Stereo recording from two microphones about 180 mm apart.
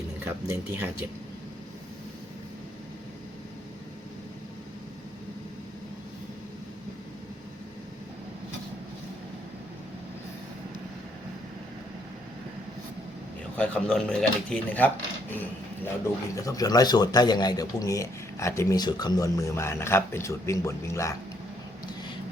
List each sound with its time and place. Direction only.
0.3 s speech: 15° right (ahead or behind)
13.6 s speech: 5° left (ahead or behind)